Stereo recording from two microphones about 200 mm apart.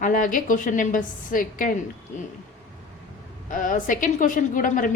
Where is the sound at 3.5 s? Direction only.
40° left (ahead or behind).